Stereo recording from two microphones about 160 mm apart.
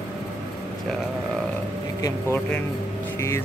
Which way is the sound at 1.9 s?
20° left (ahead or behind).